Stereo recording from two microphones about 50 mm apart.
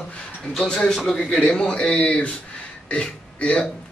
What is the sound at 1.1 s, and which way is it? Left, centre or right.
A man's voice, centre.